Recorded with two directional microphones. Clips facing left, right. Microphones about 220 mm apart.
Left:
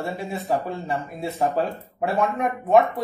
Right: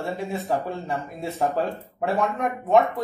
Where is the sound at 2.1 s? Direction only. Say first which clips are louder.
Left 1 dB; centre (ahead or behind).